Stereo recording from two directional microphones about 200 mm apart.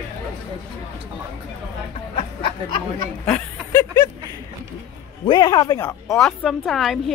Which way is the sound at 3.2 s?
10° left (ahead or behind).